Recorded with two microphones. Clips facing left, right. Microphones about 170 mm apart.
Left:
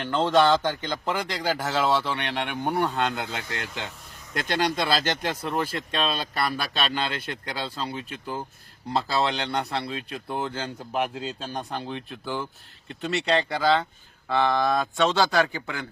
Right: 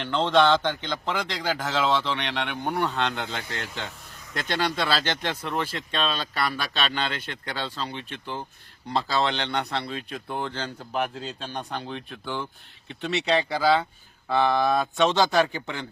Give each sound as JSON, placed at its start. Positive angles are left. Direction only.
{"t": 0.0, "sound": "a man's voice", "side_deg": 10}
{"t": 15.5, "sound": "speech", "side_deg": -25}